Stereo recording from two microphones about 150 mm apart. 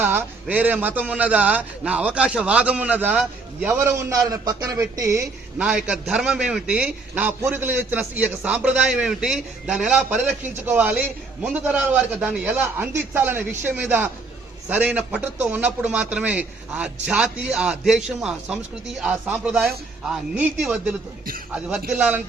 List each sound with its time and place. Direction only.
0.0 s a man's voice: 15° right (ahead or behind)
5.5 s a man's voice: 5° right (ahead or behind)
21.9 s a man's voice: 5° right (ahead or behind)